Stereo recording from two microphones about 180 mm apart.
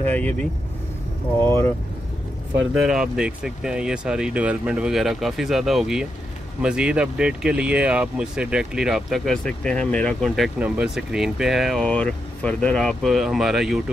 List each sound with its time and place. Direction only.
1.4 s speech: 15° left (ahead or behind)
2.5 s speech: 5° right (ahead or behind)